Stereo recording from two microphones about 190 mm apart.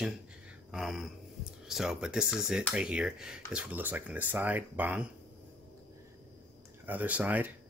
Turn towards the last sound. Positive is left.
turn(degrees=-10)  # may be behind; listen again after turning